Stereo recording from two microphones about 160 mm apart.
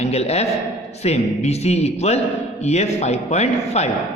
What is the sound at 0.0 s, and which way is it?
A man's voice, 40° left (ahead or behind).